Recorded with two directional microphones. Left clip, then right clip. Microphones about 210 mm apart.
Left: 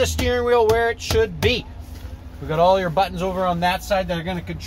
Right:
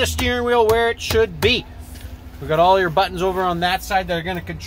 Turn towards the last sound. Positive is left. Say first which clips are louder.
# right 2 dB
turn(degrees=-40)  # may be behind; listen again after turning